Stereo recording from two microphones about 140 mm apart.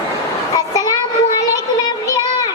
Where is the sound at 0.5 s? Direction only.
25° left (ahead or behind).